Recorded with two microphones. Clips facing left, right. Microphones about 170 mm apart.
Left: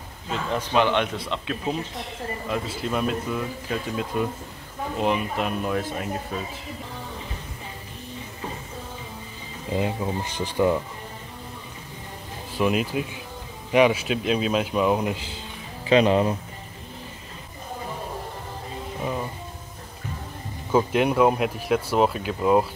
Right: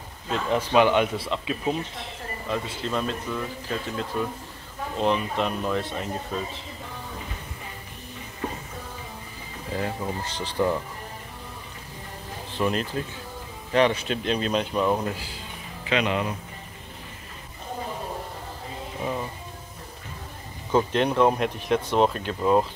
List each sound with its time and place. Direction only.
0.3 s speech: 5° right (ahead or behind)
9.7 s speech: 15° left (ahead or behind)
12.5 s speech: 10° left (ahead or behind)
15.1 s speech: 25° left (ahead or behind)
20.7 s speech: 10° left (ahead or behind)